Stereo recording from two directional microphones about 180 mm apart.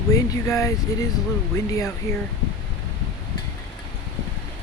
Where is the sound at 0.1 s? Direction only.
15° left (ahead or behind).